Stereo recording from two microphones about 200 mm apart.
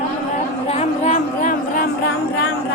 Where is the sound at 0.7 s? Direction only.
35° left (ahead or behind).